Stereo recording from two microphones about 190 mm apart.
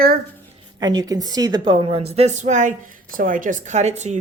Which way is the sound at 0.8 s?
20° right (ahead or behind).